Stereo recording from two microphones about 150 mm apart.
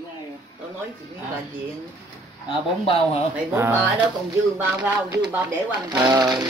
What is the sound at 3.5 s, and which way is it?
Speech, 15° right (ahead or behind).